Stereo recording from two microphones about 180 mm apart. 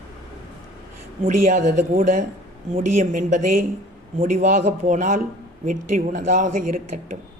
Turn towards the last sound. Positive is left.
turn(degrees=-45)  # may be behind; listen again after turning